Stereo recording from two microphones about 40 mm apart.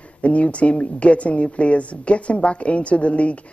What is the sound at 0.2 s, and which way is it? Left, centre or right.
A woman's voice, left.